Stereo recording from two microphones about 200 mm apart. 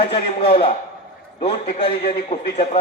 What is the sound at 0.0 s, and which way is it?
A man's voice, 30° left (ahead or behind).